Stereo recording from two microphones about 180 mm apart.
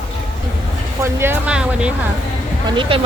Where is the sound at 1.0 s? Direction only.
15° right (ahead or behind).